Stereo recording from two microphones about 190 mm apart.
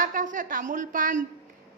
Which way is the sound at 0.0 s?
45° right (ahead or behind).